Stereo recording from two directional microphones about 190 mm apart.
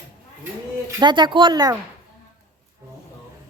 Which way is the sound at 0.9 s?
20° right (ahead or behind).